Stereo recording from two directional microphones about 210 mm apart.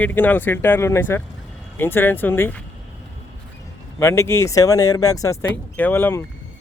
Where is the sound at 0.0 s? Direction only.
10° left (ahead or behind).